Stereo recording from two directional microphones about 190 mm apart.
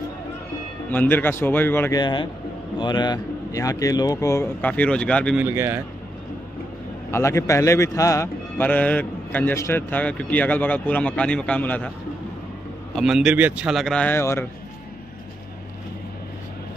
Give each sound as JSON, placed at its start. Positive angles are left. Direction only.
{"t": 0.8, "sound": "a man's voice", "side_deg": 10}
{"t": 5.4, "sound": "a man's voice", "side_deg": -10}
{"t": 7.1, "sound": "a man's voice", "side_deg": 15}
{"t": 12.9, "sound": "speech", "side_deg": 0}